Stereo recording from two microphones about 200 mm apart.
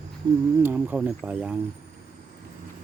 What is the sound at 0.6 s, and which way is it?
Speech, 10° right (ahead or behind).